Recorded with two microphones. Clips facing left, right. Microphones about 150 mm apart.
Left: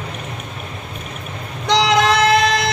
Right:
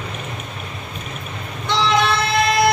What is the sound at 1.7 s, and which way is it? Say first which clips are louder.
Music: left 3 dB; 90° left.